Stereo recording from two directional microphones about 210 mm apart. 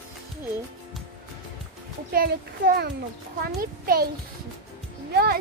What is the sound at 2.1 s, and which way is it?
A child's voice, 45° right (ahead or behind).